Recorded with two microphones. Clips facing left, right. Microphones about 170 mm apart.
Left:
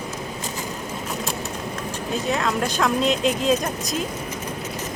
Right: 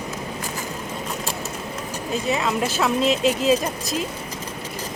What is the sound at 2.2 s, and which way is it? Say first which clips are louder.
Speech: right 1 dB; 5° right (ahead or behind).